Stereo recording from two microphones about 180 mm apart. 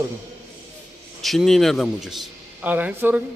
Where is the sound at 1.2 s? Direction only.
Centre (ahead or behind).